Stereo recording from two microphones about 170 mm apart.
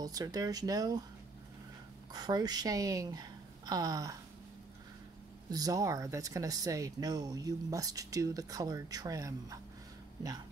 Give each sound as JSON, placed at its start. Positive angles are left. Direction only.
{"t": 0.0, "sound": "speech", "side_deg": -20}
{"t": 2.1, "sound": "speech", "side_deg": -25}
{"t": 5.5, "sound": "speech", "side_deg": -20}